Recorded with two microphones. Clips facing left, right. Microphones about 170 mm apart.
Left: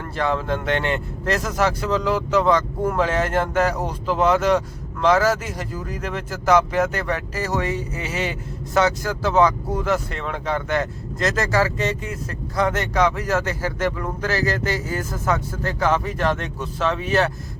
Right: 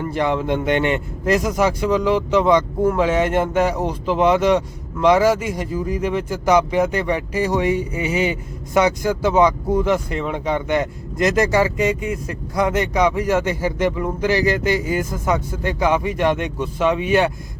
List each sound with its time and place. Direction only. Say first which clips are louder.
0.2 s speech: right 2 dB; 15° right (ahead or behind)